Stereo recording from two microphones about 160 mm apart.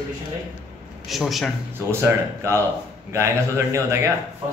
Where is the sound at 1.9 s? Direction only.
15° right (ahead or behind).